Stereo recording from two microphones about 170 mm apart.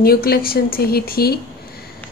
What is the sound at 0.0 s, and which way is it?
A woman's voice, 65° left (ahead or behind).